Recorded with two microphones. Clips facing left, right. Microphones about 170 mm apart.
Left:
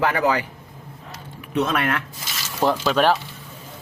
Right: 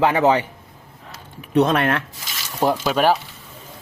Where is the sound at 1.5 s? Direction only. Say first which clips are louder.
Right 5 dB; 35° right (ahead or behind).